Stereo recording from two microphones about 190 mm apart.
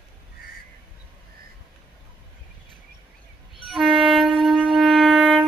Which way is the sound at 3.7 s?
Centre (ahead or behind).